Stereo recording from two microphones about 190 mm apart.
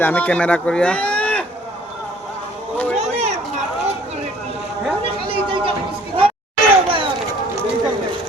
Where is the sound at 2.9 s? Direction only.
35° right (ahead or behind).